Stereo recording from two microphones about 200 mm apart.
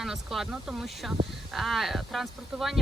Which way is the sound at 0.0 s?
Centre (ahead or behind).